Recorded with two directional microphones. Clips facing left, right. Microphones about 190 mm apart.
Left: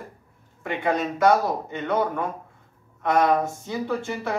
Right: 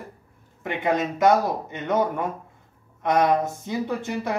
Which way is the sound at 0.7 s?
20° right (ahead or behind).